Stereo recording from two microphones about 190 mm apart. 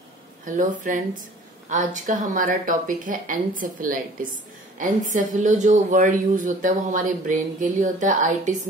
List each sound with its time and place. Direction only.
0.5 s a man's voice: 45° right (ahead or behind)